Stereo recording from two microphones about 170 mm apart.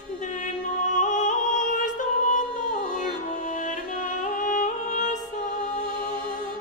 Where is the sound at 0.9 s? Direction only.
45° left (ahead or behind).